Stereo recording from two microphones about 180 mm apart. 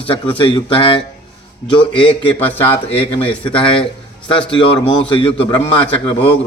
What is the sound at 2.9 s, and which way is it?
A man's voice, 30° left (ahead or behind).